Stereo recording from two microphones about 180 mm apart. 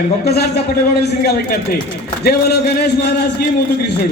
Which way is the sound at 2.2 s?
60° left (ahead or behind).